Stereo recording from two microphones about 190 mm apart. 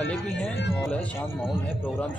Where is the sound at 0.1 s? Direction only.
5° left (ahead or behind).